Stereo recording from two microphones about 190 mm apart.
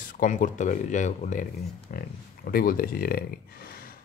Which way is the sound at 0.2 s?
40° left (ahead or behind).